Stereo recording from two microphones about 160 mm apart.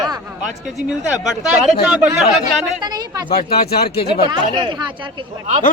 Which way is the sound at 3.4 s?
70° left (ahead or behind).